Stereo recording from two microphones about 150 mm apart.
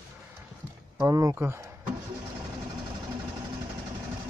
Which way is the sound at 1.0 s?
20° right (ahead or behind).